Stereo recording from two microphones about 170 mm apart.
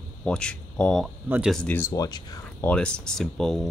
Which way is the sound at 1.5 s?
10° left (ahead or behind).